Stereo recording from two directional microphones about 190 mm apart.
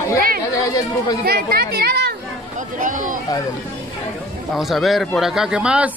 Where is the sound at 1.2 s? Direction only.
55° right (ahead or behind).